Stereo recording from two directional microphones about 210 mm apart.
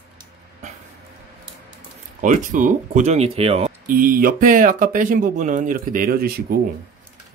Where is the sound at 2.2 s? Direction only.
40° right (ahead or behind).